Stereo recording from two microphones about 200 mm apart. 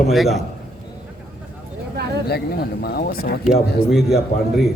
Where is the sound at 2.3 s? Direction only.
50° left (ahead or behind).